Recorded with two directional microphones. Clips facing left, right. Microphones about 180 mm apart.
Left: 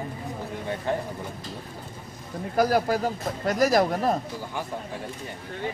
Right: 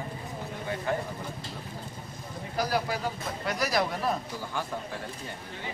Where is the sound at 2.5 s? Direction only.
50° left (ahead or behind).